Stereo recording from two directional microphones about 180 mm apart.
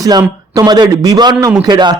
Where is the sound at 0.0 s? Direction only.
20° right (ahead or behind).